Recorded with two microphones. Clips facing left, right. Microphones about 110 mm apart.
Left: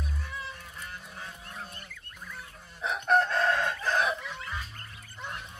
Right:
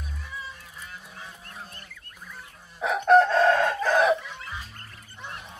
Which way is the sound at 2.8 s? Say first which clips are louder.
Right 7 dB; 80° right.